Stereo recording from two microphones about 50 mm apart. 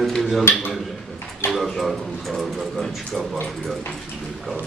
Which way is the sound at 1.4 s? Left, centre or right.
Left.